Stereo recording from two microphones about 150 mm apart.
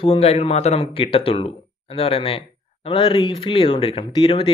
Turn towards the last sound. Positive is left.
turn(degrees=35)  # may be behind; listen again after turning